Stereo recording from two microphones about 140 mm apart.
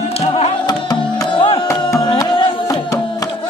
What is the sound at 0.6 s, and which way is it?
Music, 30° left (ahead or behind).